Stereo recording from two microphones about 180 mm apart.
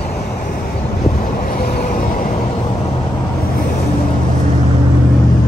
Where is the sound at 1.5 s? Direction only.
55° left (ahead or behind).